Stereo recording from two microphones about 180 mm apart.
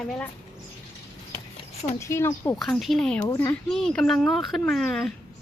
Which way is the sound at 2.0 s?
15° left (ahead or behind).